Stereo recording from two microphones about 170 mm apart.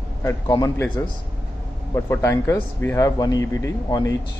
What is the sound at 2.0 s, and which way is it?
A man's voice, 15° left (ahead or behind).